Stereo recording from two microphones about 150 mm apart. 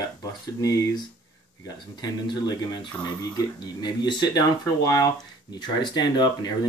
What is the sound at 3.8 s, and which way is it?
Speech, 30° left (ahead or behind).